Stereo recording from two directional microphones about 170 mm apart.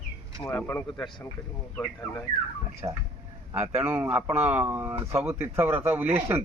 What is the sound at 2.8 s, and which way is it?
Speech, 20° right (ahead or behind).